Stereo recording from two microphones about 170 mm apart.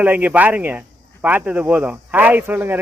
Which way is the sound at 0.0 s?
10° right (ahead or behind).